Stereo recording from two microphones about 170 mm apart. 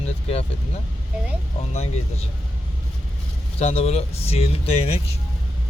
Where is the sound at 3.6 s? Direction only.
40° left (ahead or behind).